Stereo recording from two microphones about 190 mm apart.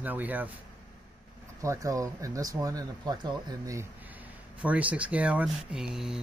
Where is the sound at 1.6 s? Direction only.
15° right (ahead or behind).